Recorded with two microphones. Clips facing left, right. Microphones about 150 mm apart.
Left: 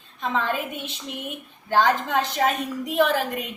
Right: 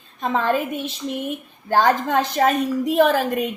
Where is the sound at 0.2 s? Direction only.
45° right (ahead or behind).